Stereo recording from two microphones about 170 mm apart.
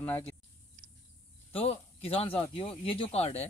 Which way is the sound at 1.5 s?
35° left (ahead or behind).